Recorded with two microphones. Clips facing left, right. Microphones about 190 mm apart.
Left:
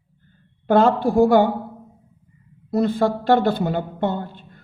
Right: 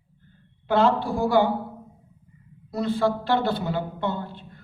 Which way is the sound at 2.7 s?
50° left (ahead or behind).